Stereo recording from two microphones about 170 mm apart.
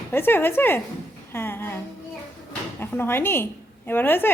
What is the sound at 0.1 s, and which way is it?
A woman's voice, 10° left (ahead or behind).